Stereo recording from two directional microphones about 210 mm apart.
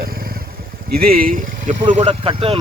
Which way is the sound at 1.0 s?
45° right (ahead or behind).